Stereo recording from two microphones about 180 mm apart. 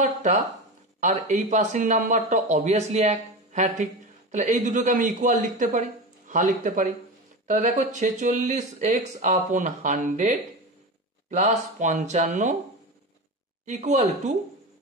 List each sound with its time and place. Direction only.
0.0 s speech: 40° right (ahead or behind)
13.7 s speech: 40° right (ahead or behind)